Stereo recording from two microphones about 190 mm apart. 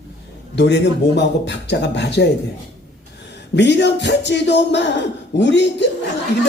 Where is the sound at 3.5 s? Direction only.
65° left (ahead or behind).